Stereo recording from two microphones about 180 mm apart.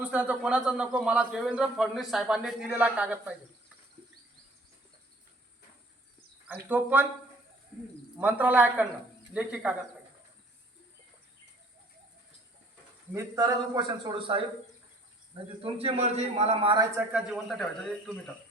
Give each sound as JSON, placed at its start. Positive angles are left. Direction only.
{"t": 0.0, "sound": "a man's voice", "side_deg": -10}
{"t": 6.5, "sound": "speech", "side_deg": -10}
{"t": 8.2, "sound": "speech", "side_deg": -10}
{"t": 13.1, "sound": "a man's voice", "side_deg": -20}
{"t": 15.4, "sound": "a man's voice", "side_deg": -30}
{"t": 17.0, "sound": "a man's voice", "side_deg": -5}